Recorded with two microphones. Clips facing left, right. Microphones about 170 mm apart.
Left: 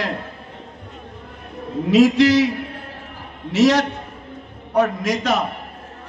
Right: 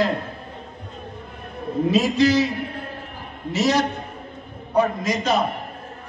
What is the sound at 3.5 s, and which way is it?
A man's voice, 90° left.